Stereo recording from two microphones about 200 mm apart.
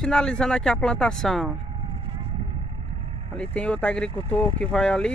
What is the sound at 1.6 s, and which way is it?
Vehicle, 25° right (ahead or behind).